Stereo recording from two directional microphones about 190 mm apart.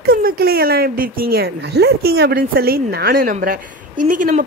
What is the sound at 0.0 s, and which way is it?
Speech, 55° right (ahead or behind).